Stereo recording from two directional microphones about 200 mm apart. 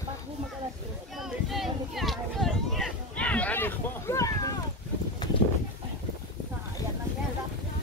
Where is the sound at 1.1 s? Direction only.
Centre (ahead or behind); by 4.5 s 15° left (ahead or behind).